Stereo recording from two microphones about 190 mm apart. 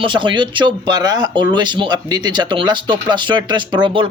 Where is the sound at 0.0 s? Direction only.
25° right (ahead or behind).